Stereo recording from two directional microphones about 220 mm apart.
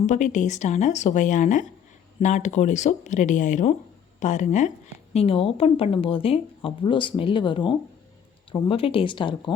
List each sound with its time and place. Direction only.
0.0 s a woman's voice: 35° left (ahead or behind)